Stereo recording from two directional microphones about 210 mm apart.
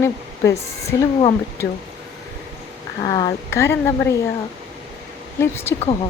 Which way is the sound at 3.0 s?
20° left (ahead or behind).